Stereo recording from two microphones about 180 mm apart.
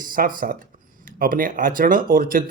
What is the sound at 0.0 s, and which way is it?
Speech, 50° right (ahead or behind).